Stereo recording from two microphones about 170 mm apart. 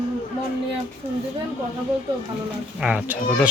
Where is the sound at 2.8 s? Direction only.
10° right (ahead or behind).